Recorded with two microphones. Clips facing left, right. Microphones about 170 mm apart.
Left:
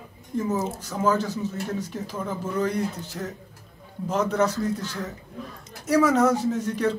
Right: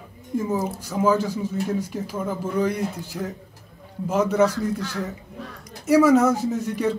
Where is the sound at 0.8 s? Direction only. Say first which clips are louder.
Right 4 dB; 10° right (ahead or behind).